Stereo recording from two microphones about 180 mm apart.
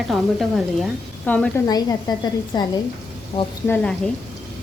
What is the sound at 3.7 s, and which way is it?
Speech, 5° left (ahead or behind).